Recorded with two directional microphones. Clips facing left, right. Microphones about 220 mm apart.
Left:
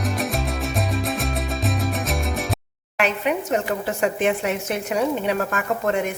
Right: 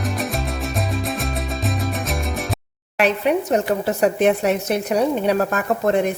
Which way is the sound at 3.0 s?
40° right (ahead or behind).